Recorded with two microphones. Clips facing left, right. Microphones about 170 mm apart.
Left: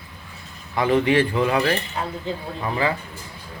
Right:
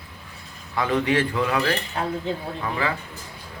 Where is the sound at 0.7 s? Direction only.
20° left (ahead or behind).